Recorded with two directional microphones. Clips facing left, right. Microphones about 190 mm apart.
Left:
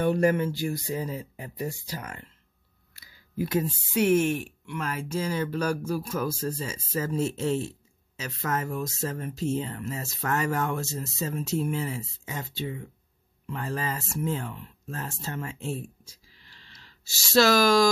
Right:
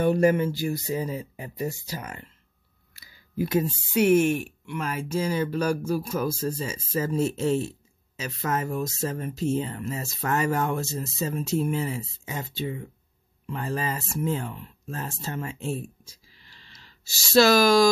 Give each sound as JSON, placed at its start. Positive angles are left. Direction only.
{"t": 0.0, "sound": "speech", "side_deg": -10}
{"t": 17.3, "sound": "speech", "side_deg": -10}